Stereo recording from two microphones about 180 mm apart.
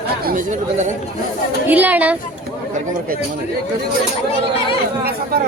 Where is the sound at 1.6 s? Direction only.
10° right (ahead or behind).